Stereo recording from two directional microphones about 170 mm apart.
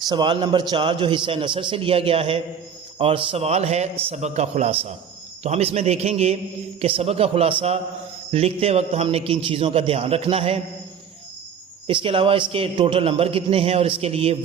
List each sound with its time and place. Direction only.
0.0 s a man's voice: 25° right (ahead or behind)
11.9 s a man's voice: 30° right (ahead or behind)